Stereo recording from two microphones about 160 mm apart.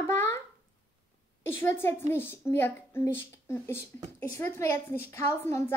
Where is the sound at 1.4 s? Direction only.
15° left (ahead or behind).